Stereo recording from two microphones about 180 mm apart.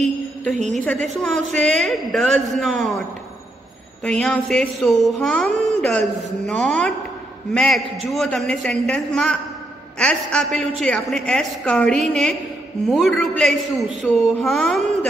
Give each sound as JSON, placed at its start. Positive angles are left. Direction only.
{"t": 0.0, "sound": "a sound", "side_deg": 5}
{"t": 0.6, "sound": "a woman's voice", "side_deg": -40}
{"t": 1.2, "sound": "a woman's voice", "side_deg": 5}
{"t": 4.0, "sound": "a woman's voice", "side_deg": 5}